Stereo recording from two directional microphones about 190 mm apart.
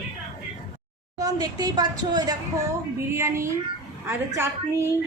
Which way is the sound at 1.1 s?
20° right (ahead or behind).